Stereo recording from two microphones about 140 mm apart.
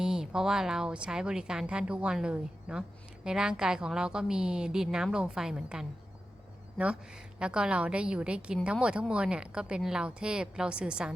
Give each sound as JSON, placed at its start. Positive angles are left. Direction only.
{"t": 0.0, "sound": "speech", "side_deg": -5}